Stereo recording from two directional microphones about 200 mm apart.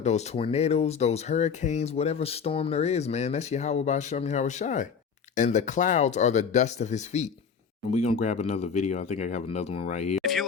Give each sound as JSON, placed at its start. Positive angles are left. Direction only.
{"t": 0.0, "sound": "speech", "side_deg": 30}